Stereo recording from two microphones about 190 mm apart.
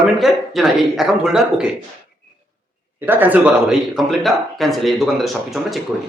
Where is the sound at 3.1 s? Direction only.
10° right (ahead or behind).